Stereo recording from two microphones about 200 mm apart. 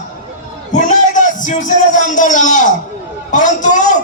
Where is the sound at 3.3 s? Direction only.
40° left (ahead or behind).